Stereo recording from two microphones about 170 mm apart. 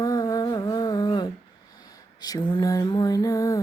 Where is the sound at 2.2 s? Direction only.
20° left (ahead or behind).